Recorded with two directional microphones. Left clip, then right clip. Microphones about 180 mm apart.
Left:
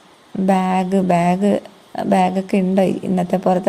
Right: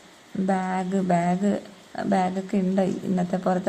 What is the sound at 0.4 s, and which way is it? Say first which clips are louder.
A woman's voice: left 9 dB; 30° left (ahead or behind).